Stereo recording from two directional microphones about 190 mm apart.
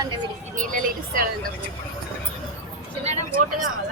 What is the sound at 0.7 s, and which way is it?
Speech, 50° right (ahead or behind).